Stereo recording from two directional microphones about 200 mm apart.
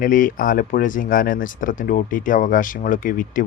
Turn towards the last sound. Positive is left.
turn(degrees=45)  # may be behind; listen again after turning